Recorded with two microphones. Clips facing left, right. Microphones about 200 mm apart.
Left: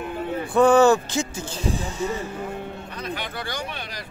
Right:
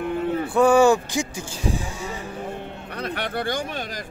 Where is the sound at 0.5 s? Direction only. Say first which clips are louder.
Left 1 dB; 10° right (ahead or behind).